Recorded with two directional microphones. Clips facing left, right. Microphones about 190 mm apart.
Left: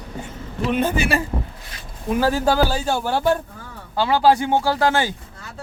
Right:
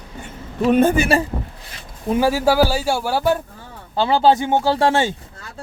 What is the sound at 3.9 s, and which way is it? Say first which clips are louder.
Speech: right 1 dB; 25° right (ahead or behind).